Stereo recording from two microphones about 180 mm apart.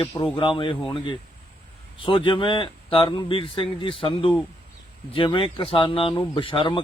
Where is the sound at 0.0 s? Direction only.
25° left (ahead or behind).